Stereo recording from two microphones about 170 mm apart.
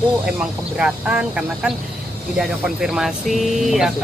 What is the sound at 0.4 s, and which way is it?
Speech, 5° right (ahead or behind).